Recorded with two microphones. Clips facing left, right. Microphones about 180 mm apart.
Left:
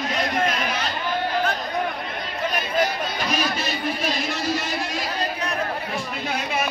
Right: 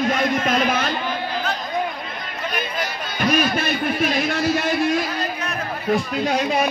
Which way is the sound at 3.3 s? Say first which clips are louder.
Right 8 dB; 55° right (ahead or behind).